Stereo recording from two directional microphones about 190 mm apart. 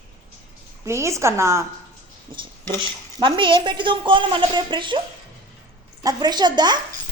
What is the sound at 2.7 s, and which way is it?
A woman's voice, 25° right (ahead or behind).